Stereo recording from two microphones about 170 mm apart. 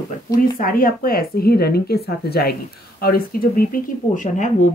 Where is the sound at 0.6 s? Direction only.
60° left (ahead or behind).